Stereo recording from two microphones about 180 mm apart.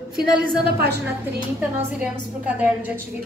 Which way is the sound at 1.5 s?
5° right (ahead or behind).